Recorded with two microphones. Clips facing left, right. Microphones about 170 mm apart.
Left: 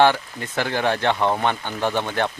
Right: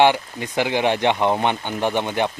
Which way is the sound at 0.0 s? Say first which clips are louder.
Right 1 dB; 15° right (ahead or behind).